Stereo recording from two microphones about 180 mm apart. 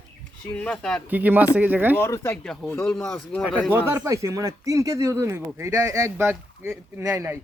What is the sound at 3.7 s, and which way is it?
Speech, 10° right (ahead or behind).